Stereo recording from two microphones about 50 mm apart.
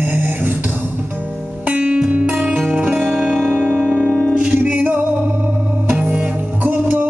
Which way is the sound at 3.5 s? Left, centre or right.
Right.